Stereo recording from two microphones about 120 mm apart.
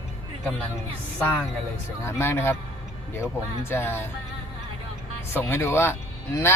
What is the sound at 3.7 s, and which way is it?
Speech, 20° left (ahead or behind).